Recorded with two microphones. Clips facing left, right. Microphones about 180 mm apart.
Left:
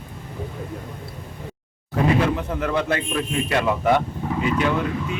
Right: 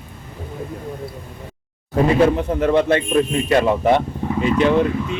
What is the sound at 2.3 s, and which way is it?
Speech, 25° right (ahead or behind).